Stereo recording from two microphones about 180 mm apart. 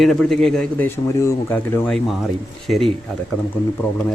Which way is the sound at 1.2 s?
15° left (ahead or behind).